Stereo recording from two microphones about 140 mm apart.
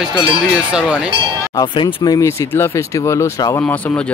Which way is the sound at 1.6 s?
30° left (ahead or behind).